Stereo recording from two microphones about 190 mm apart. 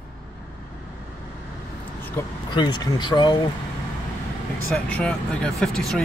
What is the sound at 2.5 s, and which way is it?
Speech, 25° left (ahead or behind).